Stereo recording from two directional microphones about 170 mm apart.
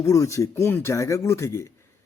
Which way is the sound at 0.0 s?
20° left (ahead or behind).